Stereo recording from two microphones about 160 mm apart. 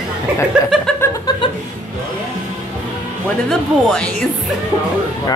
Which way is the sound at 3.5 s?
5° left (ahead or behind).